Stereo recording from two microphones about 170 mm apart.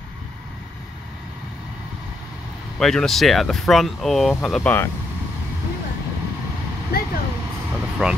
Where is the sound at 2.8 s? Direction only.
5° left (ahead or behind).